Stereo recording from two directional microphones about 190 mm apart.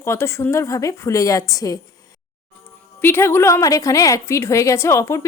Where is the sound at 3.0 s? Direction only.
10° left (ahead or behind).